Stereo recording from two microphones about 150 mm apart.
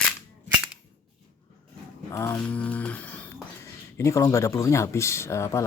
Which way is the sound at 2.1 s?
20° left (ahead or behind).